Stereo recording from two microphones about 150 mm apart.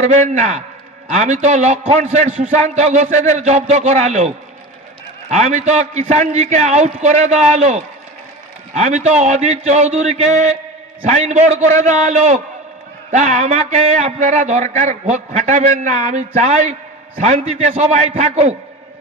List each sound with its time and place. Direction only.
0.0 s a man's voice: 55° right (ahead or behind)